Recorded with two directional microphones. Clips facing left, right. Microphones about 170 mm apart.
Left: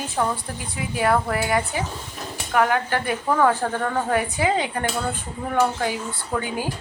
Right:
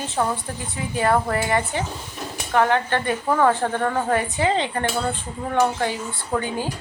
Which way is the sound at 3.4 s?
5° right (ahead or behind).